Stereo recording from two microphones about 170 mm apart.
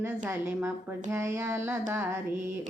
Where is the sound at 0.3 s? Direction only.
15° right (ahead or behind).